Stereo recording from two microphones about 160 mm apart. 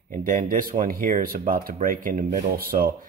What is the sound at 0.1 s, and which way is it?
A man's voice, 55° right (ahead or behind).